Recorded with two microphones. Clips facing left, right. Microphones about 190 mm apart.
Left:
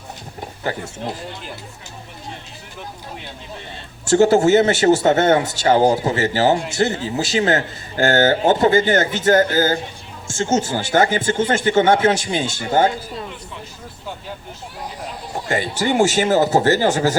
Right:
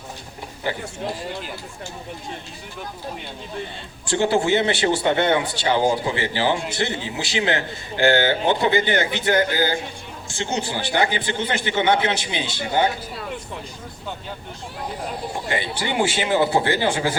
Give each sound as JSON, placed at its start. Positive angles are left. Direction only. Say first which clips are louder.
{"t": 4.0, "sound": "a man's voice", "louder": "left 7 dB", "side_deg": 45}
{"t": 15.4, "sound": "a man's voice", "louder": "left 7 dB", "side_deg": 45}